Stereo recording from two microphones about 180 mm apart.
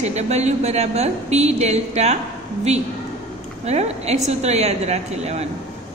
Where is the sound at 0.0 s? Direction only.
40° right (ahead or behind).